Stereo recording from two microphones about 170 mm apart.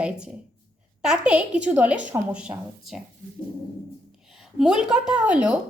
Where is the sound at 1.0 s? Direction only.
5° right (ahead or behind).